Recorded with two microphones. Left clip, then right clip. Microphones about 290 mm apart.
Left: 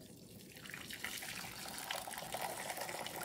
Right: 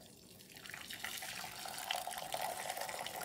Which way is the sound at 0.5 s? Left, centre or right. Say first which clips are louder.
Right 1 dB; centre.